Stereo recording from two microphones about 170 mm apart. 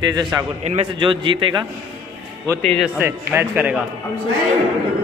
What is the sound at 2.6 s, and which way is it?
Speech, 5° left (ahead or behind).